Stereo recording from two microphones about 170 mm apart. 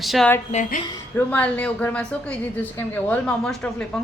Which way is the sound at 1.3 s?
10° left (ahead or behind).